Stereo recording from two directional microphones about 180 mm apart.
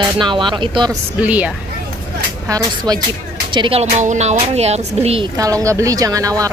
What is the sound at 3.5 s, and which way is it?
A woman's voice, 30° right (ahead or behind).